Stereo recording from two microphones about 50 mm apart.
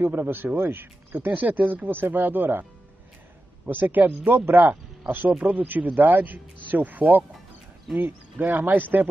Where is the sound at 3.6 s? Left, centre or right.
Right.